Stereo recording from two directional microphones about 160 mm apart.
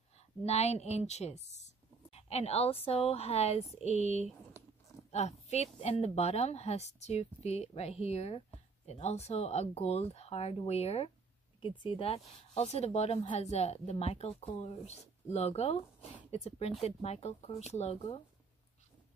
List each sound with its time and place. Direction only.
0.4 s a woman's voice: 45° left (ahead or behind)